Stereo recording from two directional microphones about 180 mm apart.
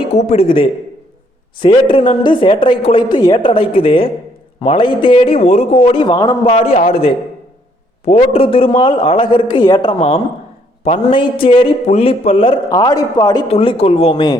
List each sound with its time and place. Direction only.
0.1 s a man's voice: 40° left (ahead or behind); by 13.4 s 20° left (ahead or behind)
13.5 s a man's voice: 30° left (ahead or behind)